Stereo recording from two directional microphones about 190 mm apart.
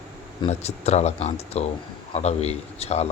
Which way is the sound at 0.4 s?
35° left (ahead or behind).